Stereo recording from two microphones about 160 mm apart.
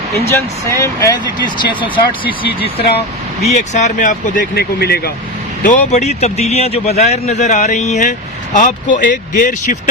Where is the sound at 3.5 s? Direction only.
45° left (ahead or behind); by 5.1 s 80° left.